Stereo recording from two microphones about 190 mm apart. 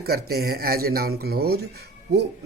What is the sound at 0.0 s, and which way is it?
Speech, 55° right (ahead or behind).